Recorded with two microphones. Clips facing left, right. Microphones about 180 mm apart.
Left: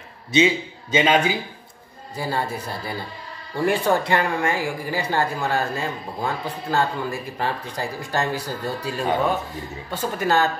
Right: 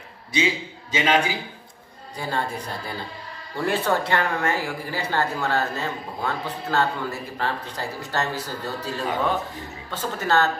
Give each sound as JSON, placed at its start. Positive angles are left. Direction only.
{"t": 0.3, "sound": "a man's voice", "side_deg": 25}
{"t": 2.1, "sound": "speech", "side_deg": 5}
{"t": 3.6, "sound": "speech", "side_deg": 15}